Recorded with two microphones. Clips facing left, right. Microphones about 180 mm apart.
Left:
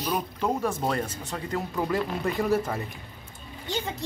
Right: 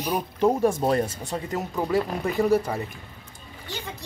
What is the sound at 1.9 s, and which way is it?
Speech, 5° right (ahead or behind).